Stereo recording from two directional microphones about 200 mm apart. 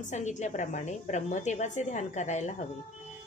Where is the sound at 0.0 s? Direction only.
35° left (ahead or behind).